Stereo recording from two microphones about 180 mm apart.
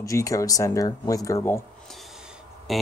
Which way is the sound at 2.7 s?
Centre (ahead or behind).